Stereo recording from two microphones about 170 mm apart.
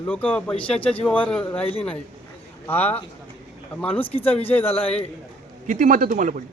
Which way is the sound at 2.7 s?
10° left (ahead or behind).